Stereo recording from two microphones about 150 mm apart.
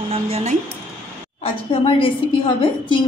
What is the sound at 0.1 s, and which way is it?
Speech, 45° right (ahead or behind).